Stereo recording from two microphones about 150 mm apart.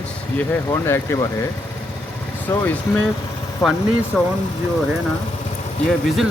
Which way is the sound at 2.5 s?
10° left (ahead or behind).